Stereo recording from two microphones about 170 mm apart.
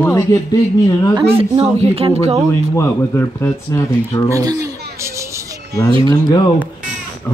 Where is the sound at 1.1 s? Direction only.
30° right (ahead or behind).